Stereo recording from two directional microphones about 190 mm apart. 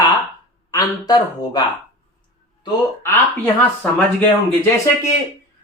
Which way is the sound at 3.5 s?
10° left (ahead or behind).